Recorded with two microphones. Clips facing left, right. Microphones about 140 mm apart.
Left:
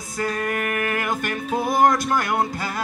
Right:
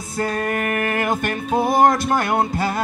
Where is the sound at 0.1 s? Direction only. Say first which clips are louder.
Right 3 dB; 25° right (ahead or behind).